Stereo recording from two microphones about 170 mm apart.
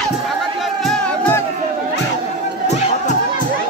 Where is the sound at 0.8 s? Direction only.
5° left (ahead or behind).